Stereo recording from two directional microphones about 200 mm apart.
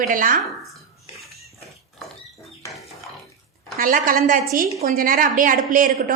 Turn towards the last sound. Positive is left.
turn(degrees=-40)  # may be behind; listen again after turning